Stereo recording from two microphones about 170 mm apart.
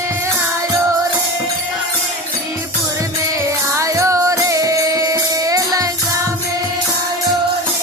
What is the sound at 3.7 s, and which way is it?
Music, 15° right (ahead or behind).